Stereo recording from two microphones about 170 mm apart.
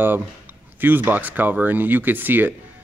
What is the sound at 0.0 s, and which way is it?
Speech, 10° right (ahead or behind).